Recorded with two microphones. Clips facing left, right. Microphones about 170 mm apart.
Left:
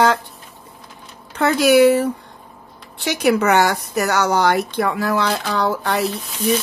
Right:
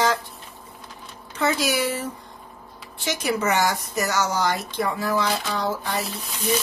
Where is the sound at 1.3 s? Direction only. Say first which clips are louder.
Left 10 dB; 60° left (ahead or behind).